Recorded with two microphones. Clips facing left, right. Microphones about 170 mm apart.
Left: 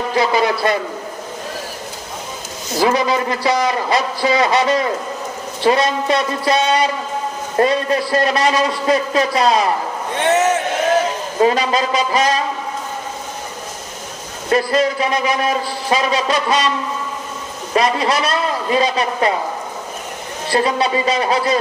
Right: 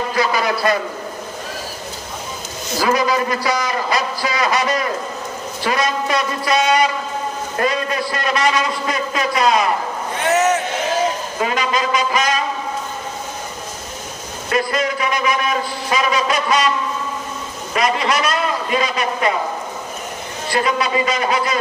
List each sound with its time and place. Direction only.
0.2 s a man's voice: 25° left (ahead or behind)
2.8 s a man's voice: 25° left (ahead or behind)
11.3 s a man's voice: 35° left (ahead or behind)
14.5 s a man's voice: 30° left (ahead or behind)
17.7 s a man's voice: 30° left (ahead or behind)
20.5 s a man's voice: 30° left (ahead or behind)